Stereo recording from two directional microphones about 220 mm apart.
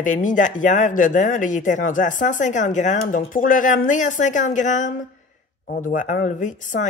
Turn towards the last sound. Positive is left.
turn(degrees=35)  # may be behind; listen again after turning